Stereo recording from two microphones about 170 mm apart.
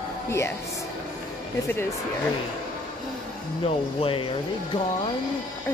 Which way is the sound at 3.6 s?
35° left (ahead or behind).